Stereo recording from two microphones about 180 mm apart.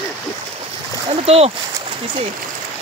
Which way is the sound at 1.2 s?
35° right (ahead or behind).